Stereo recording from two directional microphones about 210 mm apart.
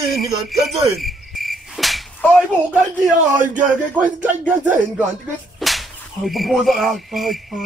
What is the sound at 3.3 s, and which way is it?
Speech, 40° right (ahead or behind).